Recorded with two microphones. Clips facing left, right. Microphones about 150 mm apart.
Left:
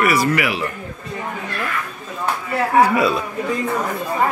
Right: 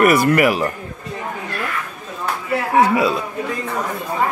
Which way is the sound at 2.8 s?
15° right (ahead or behind).